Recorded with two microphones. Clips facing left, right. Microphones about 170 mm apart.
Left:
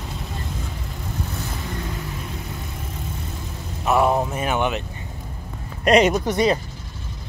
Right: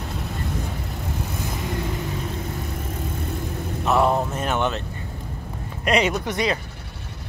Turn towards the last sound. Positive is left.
turn(degrees=35)  # may be behind; listen again after turning